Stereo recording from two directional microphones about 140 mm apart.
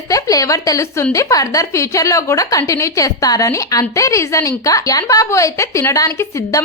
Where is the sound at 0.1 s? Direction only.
25° left (ahead or behind).